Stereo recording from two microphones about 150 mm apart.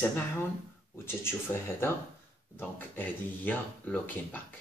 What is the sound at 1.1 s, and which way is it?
Speech, 15° left (ahead or behind).